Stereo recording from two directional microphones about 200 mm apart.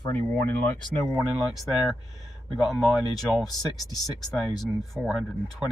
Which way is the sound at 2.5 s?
Centre (ahead or behind).